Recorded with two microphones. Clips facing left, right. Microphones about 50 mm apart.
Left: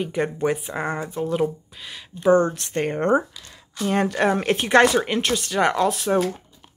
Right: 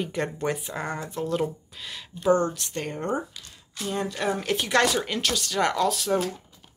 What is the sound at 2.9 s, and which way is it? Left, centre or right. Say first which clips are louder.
Speech: left 10 dB; left.